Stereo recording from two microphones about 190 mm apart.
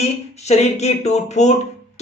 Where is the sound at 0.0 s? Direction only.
35° left (ahead or behind).